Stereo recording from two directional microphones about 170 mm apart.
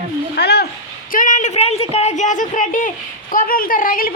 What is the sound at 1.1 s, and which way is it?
A woman's voice, 50° left (ahead or behind).